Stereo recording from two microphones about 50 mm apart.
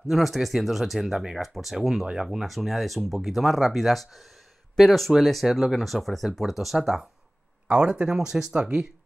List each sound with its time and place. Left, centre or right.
0.1 s speech: centre
7.6 s speech: right
7.9 s speech: centre